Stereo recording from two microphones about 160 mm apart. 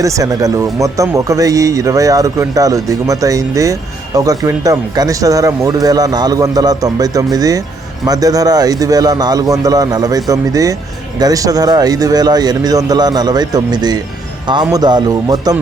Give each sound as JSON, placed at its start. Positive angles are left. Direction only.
{"t": 0.0, "sound": "speech", "side_deg": -20}